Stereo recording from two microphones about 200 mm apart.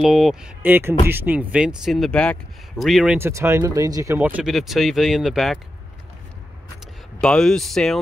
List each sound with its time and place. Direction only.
0.0 s speech: centre (ahead or behind)
3.2 s speech: 15° right (ahead or behind)
4.4 s speech: centre (ahead or behind)
7.2 s speech: 5° left (ahead or behind)